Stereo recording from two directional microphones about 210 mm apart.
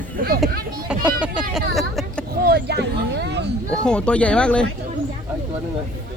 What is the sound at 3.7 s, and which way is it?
Speech, 5° left (ahead or behind).